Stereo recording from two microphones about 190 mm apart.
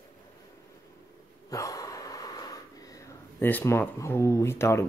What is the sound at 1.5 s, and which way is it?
Gasp, 15° left (ahead or behind).